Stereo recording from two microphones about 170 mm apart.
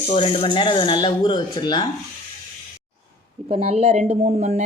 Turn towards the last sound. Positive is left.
turn(degrees=-45)  # may be behind; listen again after turning